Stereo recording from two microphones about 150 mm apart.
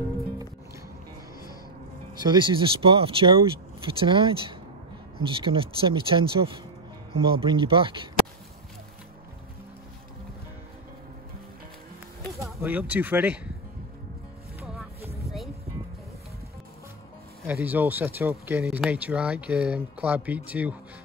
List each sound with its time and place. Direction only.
2.2 s speech: 30° right (ahead or behind)
12.6 s speech: 10° right (ahead or behind)
14.6 s music: 5° right (ahead or behind)
17.5 s speech: 15° right (ahead or behind)